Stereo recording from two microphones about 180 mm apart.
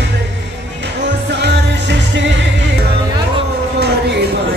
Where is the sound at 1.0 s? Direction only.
75° right (ahead or behind).